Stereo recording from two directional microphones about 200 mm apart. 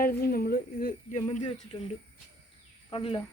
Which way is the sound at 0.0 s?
50° left (ahead or behind).